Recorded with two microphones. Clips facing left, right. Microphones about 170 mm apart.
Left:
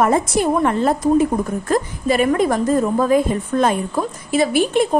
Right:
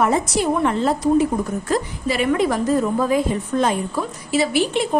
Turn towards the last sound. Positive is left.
turn(degrees=50)  # may be behind; listen again after turning